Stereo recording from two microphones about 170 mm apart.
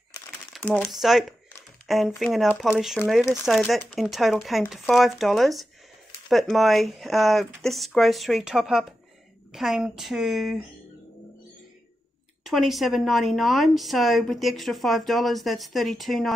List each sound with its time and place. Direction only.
0.6 s a woman's voice: 10° left (ahead or behind)
12.4 s a woman's voice: centre (ahead or behind)